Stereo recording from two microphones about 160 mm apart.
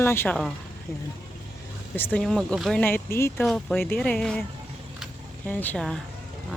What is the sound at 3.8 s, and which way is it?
Speech, 10° left (ahead or behind).